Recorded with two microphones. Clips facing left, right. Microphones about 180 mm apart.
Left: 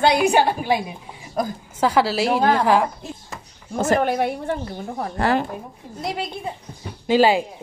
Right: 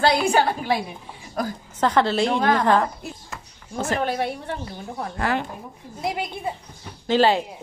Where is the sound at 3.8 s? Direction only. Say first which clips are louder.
Left 5 dB; 45° left (ahead or behind).